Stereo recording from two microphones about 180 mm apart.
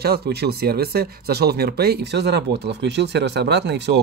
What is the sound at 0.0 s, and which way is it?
Speech, 60° right (ahead or behind).